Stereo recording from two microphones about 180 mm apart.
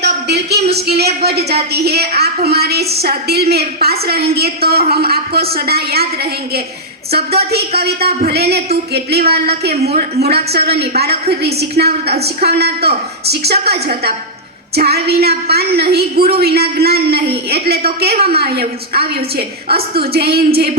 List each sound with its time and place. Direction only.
0.0 s a woman's voice: 65° right (ahead or behind)
7.3 s a woman's voice: 60° right (ahead or behind)